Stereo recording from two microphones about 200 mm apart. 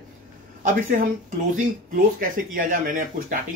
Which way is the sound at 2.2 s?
45° right (ahead or behind).